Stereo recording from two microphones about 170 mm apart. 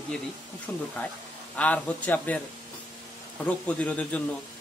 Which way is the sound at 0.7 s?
10° left (ahead or behind).